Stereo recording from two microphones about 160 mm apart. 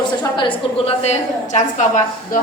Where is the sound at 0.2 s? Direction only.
30° left (ahead or behind).